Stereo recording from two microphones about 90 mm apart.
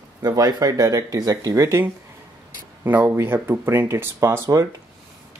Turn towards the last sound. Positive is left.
turn(degrees=-30)  # may be behind; listen again after turning